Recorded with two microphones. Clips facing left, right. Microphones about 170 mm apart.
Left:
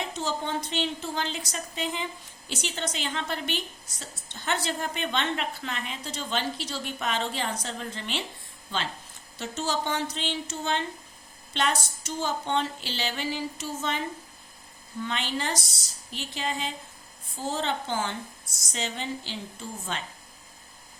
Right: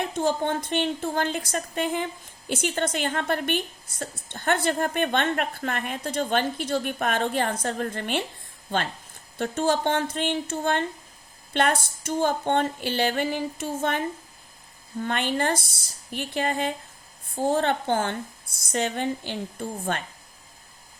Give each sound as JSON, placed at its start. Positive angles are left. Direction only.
{"t": 0.0, "sound": "a woman's voice", "side_deg": -55}